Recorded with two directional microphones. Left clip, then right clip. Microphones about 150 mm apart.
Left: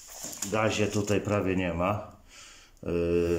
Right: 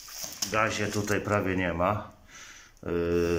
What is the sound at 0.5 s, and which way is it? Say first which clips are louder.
Speech: even; 15° left (ahead or behind).